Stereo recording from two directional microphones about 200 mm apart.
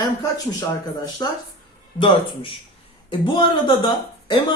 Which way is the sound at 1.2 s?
20° left (ahead or behind).